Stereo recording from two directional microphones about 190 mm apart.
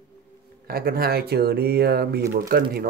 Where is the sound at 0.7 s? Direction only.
55° right (ahead or behind).